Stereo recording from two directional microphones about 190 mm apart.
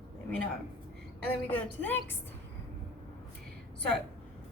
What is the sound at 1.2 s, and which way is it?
Speech, 5° left (ahead or behind).